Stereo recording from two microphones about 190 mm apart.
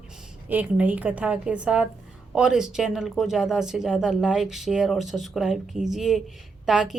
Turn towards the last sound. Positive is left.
turn(degrees=-5)  # may be behind; listen again after turning